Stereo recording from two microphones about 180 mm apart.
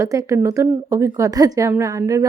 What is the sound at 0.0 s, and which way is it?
A woman's voice, 15° right (ahead or behind).